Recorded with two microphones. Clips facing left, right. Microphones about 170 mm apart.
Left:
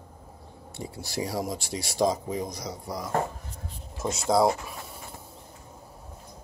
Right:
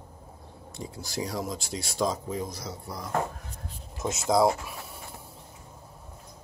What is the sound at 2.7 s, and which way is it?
Speech, centre (ahead or behind).